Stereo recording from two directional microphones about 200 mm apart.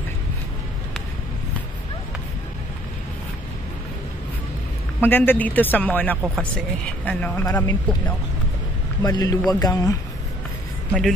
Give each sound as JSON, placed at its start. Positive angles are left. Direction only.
{"t": 5.0, "sound": "speech", "side_deg": 10}
{"t": 9.0, "sound": "speech", "side_deg": 20}
{"t": 10.9, "sound": "speech", "side_deg": 0}